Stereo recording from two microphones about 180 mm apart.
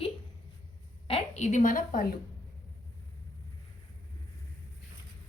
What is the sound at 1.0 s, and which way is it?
A woman's voice, 35° left (ahead or behind).